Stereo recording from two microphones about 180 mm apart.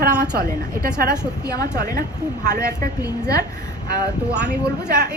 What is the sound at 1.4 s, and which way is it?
Speech, 20° left (ahead or behind).